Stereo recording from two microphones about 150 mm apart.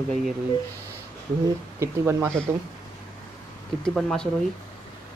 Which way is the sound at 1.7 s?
15° right (ahead or behind).